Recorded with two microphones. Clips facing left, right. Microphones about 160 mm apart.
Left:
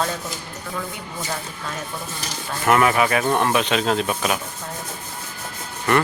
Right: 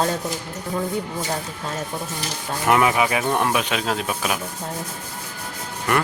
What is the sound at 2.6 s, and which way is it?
Speech, 15° right (ahead or behind).